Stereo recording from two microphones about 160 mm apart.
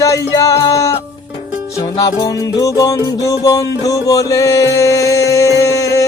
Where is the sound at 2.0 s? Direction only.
20° left (ahead or behind).